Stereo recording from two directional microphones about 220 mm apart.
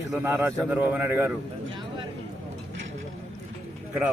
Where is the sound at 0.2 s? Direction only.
10° right (ahead or behind).